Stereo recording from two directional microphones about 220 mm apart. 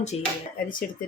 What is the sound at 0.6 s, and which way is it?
Speech, 40° left (ahead or behind).